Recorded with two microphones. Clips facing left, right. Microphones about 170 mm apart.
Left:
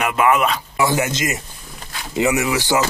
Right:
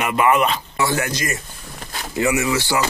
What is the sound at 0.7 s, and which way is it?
Speech, 20° left (ahead or behind).